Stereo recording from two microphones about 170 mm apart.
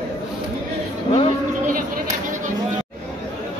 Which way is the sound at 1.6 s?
55° right (ahead or behind).